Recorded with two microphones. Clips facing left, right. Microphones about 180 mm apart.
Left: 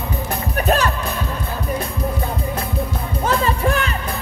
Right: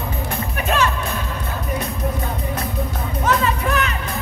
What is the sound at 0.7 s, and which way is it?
Music, 40° left (ahead or behind).